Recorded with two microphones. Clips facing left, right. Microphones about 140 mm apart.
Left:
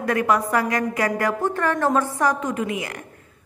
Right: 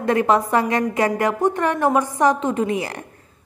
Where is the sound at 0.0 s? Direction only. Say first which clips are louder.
Right 3 dB; 25° right (ahead or behind).